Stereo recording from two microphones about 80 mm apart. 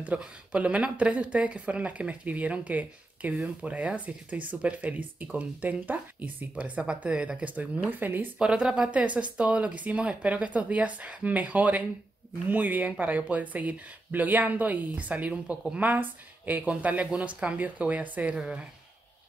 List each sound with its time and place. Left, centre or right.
0.0 s speech: centre
8.4 s speech: centre